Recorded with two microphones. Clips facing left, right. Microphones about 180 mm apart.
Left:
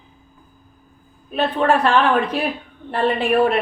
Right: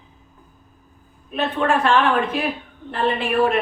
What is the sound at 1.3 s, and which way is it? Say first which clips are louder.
Speech: left 3 dB; 35° left (ahead or behind).